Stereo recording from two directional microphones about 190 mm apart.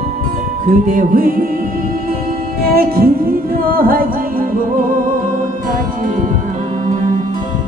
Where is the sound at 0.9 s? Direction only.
45° right (ahead or behind).